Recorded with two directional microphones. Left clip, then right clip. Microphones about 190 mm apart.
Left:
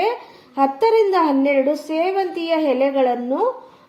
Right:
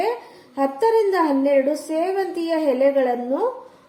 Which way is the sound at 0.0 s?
20° left (ahead or behind).